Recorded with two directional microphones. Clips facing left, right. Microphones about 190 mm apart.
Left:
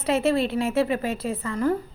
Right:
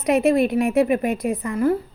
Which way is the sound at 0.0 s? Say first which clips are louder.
Right 5 dB; 15° right (ahead or behind).